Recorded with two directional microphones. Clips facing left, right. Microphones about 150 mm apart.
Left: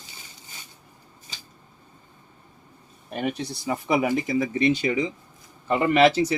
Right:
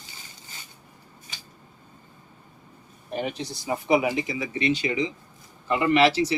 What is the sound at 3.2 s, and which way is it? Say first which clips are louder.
Speech: left 7 dB; 55° left (ahead or behind).